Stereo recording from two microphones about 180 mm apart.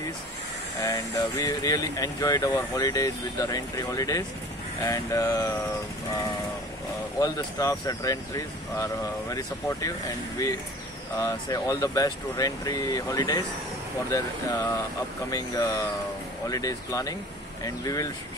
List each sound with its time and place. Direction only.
0.7 s speech: 20° left (ahead or behind)
7.2 s speech: 20° left (ahead or behind)